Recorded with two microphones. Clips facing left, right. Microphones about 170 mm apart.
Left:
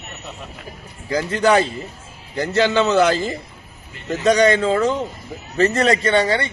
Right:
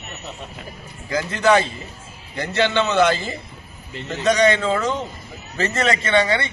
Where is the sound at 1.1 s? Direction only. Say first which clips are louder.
Left 1 dB; 35° left (ahead or behind).